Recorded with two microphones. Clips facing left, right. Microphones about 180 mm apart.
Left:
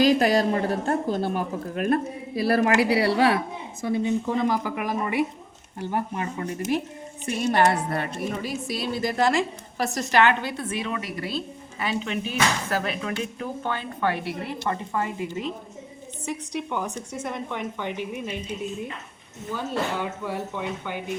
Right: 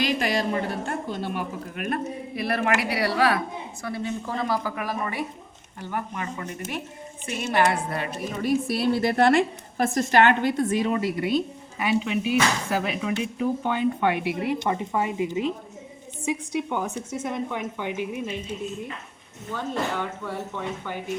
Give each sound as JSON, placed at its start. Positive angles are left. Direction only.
{"t": 0.0, "sound": "speech", "side_deg": 40}
{"t": 5.9, "sound": "a woman's voice", "side_deg": 30}
{"t": 8.4, "sound": "a woman's voice", "side_deg": -60}
{"t": 10.9, "sound": "speech", "side_deg": -25}
{"t": 19.5, "sound": "speech", "side_deg": 5}